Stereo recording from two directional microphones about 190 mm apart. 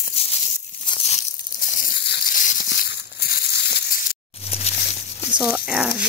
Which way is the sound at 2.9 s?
60° left (ahead or behind).